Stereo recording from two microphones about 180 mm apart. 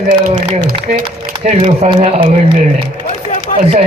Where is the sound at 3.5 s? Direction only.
40° left (ahead or behind).